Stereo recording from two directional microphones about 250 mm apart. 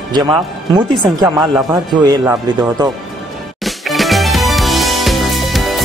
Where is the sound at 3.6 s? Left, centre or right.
Centre.